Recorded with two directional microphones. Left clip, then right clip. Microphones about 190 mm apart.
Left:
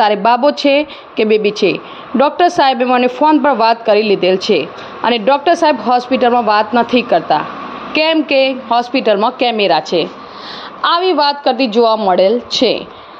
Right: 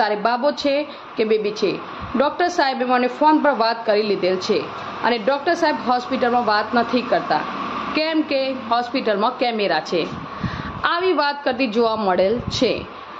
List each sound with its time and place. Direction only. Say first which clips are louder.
0.0 s a woman's voice: left 8 dB; 45° left (ahead or behind); by 12.8 s 25° left (ahead or behind)